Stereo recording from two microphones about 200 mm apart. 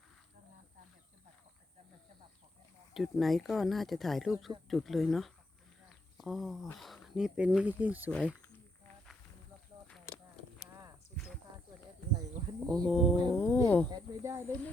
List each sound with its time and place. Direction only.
2.9 s speech: centre (ahead or behind)
8.1 s speech: 5° left (ahead or behind)
12.5 s speech: 5° left (ahead or behind)
13.9 s speech: 15° right (ahead or behind)